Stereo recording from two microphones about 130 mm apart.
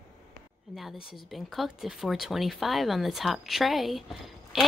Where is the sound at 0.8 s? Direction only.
Centre (ahead or behind).